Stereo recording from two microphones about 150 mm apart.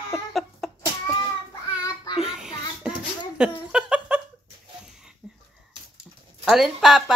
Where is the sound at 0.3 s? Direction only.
Centre (ahead or behind).